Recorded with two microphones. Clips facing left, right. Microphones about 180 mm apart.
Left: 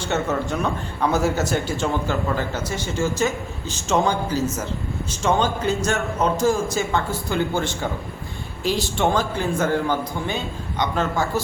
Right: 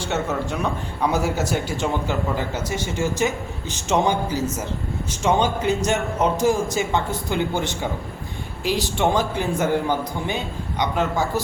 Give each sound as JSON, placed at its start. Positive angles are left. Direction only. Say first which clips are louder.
{"t": 0.0, "sound": "a man's voice", "louder": "left 1 dB", "side_deg": -10}